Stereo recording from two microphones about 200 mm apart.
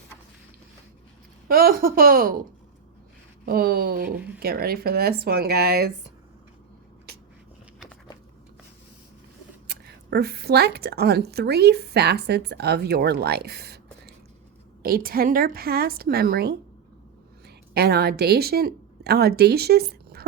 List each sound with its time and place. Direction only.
1.5 s a woman's voice: 45° right (ahead or behind)
3.4 s a woman's voice: 50° right (ahead or behind)
9.6 s a woman's voice: 55° right (ahead or behind)
14.8 s a woman's voice: 45° right (ahead or behind)